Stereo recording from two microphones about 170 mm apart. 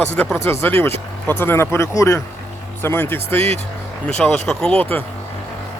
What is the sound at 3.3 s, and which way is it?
Speech, 35° right (ahead or behind).